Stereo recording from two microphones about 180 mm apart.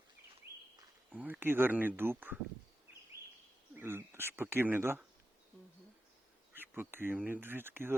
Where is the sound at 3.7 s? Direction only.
15° right (ahead or behind).